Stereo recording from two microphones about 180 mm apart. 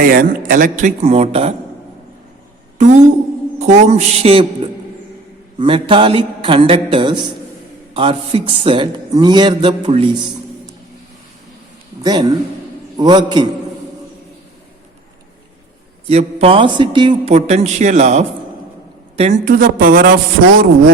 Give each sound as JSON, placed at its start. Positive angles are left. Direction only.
{"t": 0.0, "sound": "speech", "side_deg": -50}
{"t": 2.7, "sound": "a woman's voice", "side_deg": -40}
{"t": 5.5, "sound": "a man's voice", "side_deg": -30}
{"t": 12.0, "sound": "a man's voice", "side_deg": -25}
{"t": 16.0, "sound": "a man's voice", "side_deg": -35}
{"t": 19.5, "sound": "speech", "side_deg": -50}